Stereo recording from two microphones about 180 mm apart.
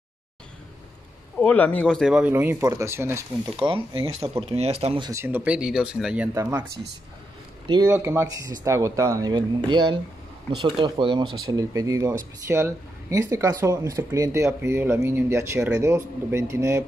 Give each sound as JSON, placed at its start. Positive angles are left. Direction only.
{"t": 1.4, "sound": "speech", "side_deg": 10}
{"t": 2.3, "sound": "speech", "side_deg": -20}
{"t": 3.5, "sound": "speech", "side_deg": -25}
{"t": 5.1, "sound": "speech", "side_deg": -10}
{"t": 7.6, "sound": "speech", "side_deg": -20}